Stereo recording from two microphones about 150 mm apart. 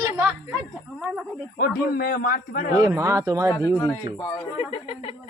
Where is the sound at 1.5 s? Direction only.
80° left.